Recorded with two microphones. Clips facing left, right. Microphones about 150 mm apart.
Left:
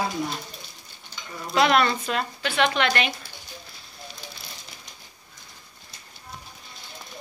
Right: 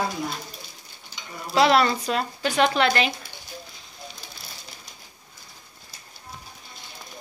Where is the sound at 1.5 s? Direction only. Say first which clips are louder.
Right 2 dB; 30° right (ahead or behind).